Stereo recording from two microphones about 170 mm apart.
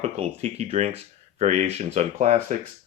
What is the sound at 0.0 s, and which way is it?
Speech, 40° right (ahead or behind).